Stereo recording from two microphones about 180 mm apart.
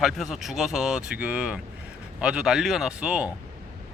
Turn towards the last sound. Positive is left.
turn(degrees=-5)  # may be behind; listen again after turning